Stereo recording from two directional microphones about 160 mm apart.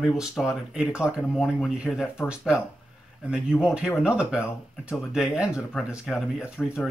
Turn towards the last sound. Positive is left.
turn(degrees=5)  # may be behind; listen again after turning